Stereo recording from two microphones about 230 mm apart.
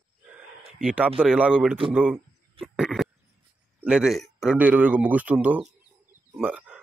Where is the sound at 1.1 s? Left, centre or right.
Centre.